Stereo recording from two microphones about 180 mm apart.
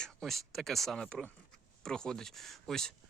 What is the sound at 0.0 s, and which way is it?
Speech, centre (ahead or behind).